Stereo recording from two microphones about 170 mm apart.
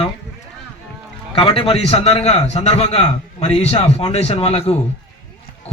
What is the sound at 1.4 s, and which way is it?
A man's voice, 35° left (ahead or behind).